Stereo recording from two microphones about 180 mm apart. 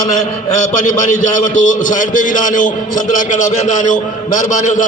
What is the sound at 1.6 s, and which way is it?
A man's voice, 45° left (ahead or behind).